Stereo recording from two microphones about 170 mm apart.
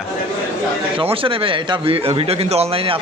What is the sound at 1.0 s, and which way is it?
A man's voice, 30° right (ahead or behind).